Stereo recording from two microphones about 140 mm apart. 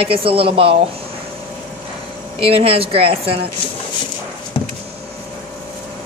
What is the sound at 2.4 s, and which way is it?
Speech, 40° right (ahead or behind).